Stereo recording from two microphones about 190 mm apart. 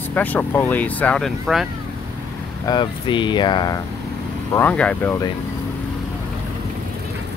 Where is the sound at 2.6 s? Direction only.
25° left (ahead or behind).